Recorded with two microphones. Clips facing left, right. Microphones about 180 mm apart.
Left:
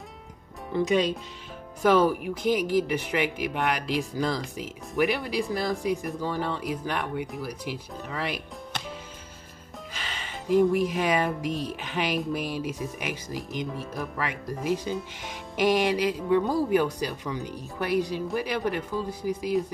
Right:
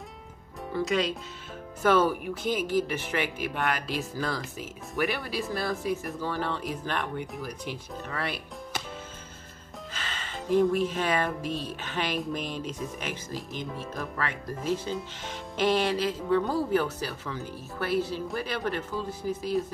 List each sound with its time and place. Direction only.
0.7 s speech: 15° left (ahead or behind)
9.9 s speech: 10° left (ahead or behind)